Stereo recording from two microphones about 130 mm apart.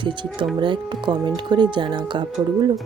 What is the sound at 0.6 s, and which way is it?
Speech, 40° right (ahead or behind).